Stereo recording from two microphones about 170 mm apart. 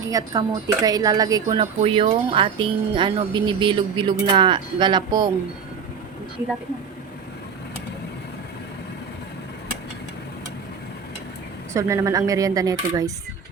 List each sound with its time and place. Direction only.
0.1 s speech: 20° right (ahead or behind)
1.8 s speech: 30° right (ahead or behind)
11.7 s speech: 15° right (ahead or behind)